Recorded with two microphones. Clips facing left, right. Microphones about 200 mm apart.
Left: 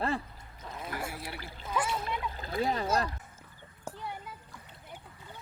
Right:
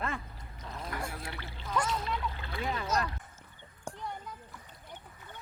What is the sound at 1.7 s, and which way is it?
Splash, 5° left (ahead or behind).